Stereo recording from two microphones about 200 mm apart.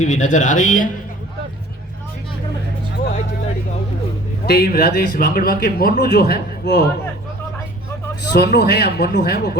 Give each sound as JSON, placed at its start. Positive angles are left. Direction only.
{"t": 0.0, "sound": "speech", "side_deg": 35}
{"t": 4.4, "sound": "speech", "side_deg": 50}
{"t": 8.3, "sound": "speech", "side_deg": 55}